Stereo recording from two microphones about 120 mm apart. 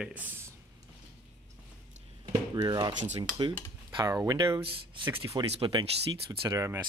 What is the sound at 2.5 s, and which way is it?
Speech, 35° right (ahead or behind).